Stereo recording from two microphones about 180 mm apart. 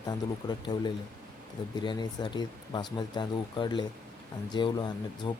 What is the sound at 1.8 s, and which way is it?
Speech, 25° left (ahead or behind).